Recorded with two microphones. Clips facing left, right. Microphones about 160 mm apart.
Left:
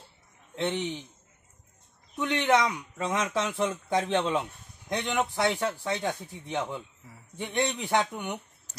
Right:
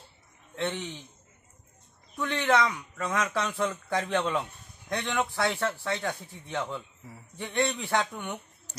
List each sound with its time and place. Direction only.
0.6 s speech: 20° left (ahead or behind)
2.1 s a man's voice: 15° left (ahead or behind)